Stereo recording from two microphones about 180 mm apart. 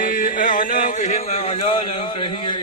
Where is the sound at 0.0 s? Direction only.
50° left (ahead or behind).